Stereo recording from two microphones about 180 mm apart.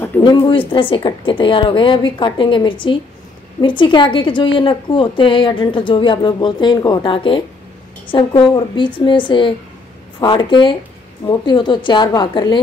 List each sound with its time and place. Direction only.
0.2 s a woman's voice: 25° left (ahead or behind)